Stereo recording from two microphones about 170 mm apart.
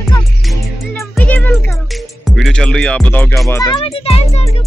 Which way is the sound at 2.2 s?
Centre (ahead or behind).